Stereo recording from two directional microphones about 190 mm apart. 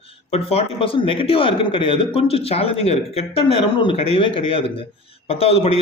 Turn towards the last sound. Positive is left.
turn(degrees=30)  # may be behind; listen again after turning